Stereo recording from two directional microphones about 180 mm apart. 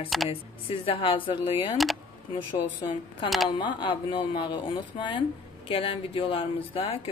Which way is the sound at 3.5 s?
25° left (ahead or behind).